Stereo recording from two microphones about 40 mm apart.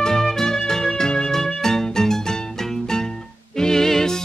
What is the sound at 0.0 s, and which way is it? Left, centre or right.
Music, centre.